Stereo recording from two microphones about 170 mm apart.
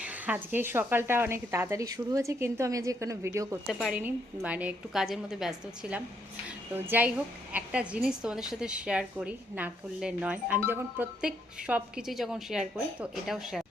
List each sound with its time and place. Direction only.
0.0 s speech: 10° right (ahead or behind)
3.7 s a woman's voice: centre (ahead or behind)